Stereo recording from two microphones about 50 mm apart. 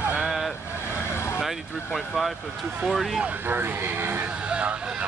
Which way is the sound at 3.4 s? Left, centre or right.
Right.